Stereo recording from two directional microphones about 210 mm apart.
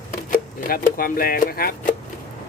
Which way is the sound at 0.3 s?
45° left (ahead or behind).